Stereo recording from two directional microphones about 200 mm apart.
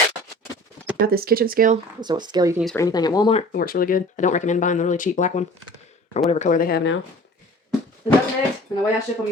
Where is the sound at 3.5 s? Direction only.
45° left (ahead or behind).